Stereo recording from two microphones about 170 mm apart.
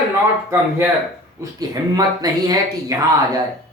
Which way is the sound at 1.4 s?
20° right (ahead or behind).